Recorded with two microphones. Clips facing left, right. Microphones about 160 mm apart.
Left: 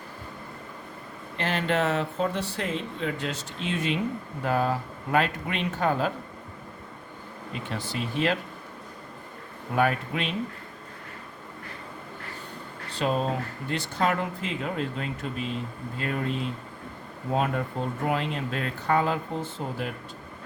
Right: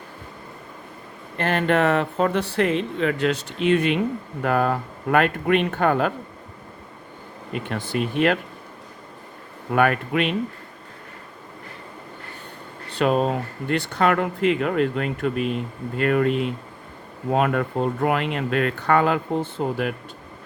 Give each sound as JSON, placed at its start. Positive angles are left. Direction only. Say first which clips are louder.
{"t": 1.4, "sound": "speech", "louder": "right 6 dB", "side_deg": -55}
{"t": 7.5, "sound": "speech", "louder": "right 7 dB", "side_deg": -60}
{"t": 9.7, "sound": "speech", "louder": "right 5 dB", "side_deg": -65}
{"t": 12.9, "sound": "speech", "louder": "right 6 dB", "side_deg": -65}